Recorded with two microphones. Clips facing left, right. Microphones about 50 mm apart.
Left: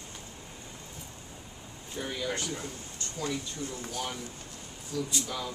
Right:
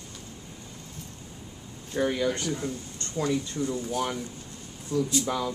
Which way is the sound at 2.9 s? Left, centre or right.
Right.